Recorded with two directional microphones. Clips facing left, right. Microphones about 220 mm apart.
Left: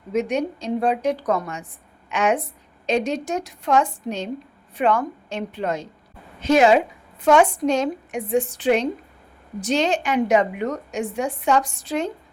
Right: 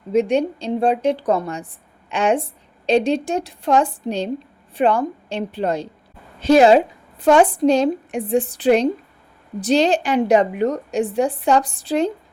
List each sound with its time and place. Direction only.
0.1 s a woman's voice: 30° right (ahead or behind)